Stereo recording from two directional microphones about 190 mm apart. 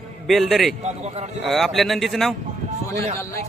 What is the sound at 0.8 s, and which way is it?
Speech, 35° right (ahead or behind).